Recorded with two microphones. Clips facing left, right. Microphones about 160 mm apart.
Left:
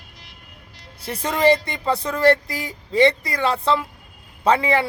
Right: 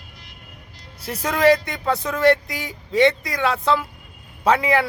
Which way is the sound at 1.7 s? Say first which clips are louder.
Even; centre (ahead or behind).